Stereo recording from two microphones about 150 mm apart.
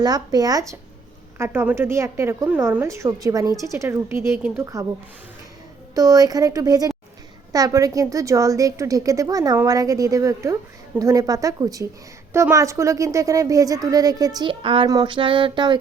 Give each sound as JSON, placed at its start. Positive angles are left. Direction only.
{"t": 0.0, "sound": "a woman's voice", "side_deg": -25}
{"t": 5.9, "sound": "a woman's voice", "side_deg": -25}
{"t": 14.8, "sound": "a sound", "side_deg": -30}